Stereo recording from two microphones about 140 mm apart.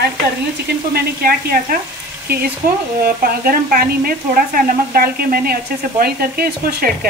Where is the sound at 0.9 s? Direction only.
90° right.